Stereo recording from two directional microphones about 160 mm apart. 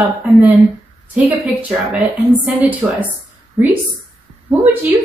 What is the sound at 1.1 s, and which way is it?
A woman's voice, 10° right (ahead or behind).